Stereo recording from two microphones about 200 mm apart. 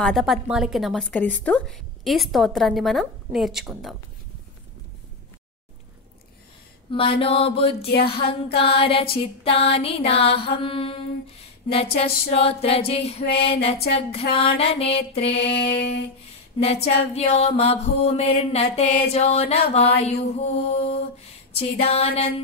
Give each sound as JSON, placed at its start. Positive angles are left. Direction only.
{"t": 0.0, "sound": "a woman's voice", "side_deg": 0}
{"t": 6.9, "sound": "mantra", "side_deg": 25}
{"t": 7.8, "sound": "speech", "side_deg": 55}
{"t": 8.1, "sound": "mantra", "side_deg": 25}
{"t": 17.1, "sound": "mantra", "side_deg": 30}